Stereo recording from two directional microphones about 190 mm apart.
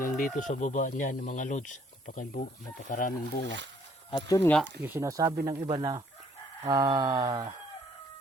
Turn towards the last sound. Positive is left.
turn(degrees=-20)  # may be behind; listen again after turning